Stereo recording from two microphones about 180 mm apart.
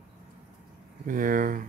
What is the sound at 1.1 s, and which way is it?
Speech, 50° right (ahead or behind).